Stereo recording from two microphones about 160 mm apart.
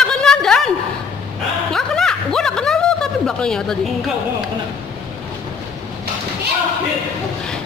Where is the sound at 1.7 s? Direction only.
5° left (ahead or behind).